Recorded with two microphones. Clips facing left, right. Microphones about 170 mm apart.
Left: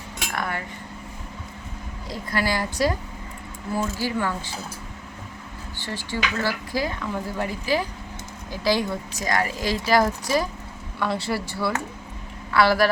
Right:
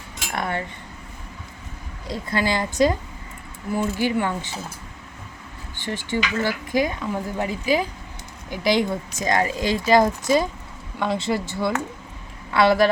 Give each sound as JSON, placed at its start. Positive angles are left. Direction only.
{"t": 0.3, "sound": "cutlery", "side_deg": -25}
{"t": 2.0, "sound": "speech", "side_deg": -20}
{"t": 4.0, "sound": "speech", "side_deg": -20}
{"t": 5.7, "sound": "speech", "side_deg": -20}